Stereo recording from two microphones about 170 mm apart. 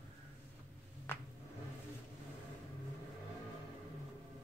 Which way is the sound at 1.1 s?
15° left (ahead or behind).